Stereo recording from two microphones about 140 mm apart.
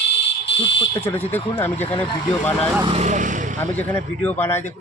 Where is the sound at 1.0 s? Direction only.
15° left (ahead or behind).